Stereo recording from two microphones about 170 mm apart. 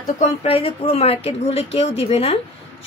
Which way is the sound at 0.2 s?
35° left (ahead or behind).